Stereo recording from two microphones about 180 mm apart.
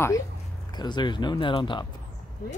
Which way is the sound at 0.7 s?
25° left (ahead or behind).